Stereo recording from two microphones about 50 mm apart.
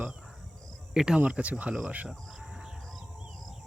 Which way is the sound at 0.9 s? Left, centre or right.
Centre.